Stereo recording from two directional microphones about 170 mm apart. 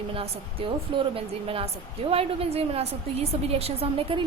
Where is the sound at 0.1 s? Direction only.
30° right (ahead or behind).